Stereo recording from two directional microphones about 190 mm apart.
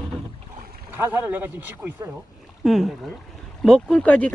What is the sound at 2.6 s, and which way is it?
Speech, centre (ahead or behind).